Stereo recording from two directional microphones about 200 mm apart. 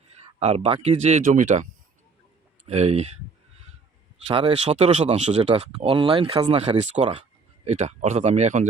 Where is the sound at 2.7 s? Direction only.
30° right (ahead or behind).